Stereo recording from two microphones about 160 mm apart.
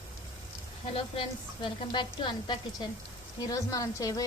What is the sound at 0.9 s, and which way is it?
A woman's voice, 35° left (ahead or behind).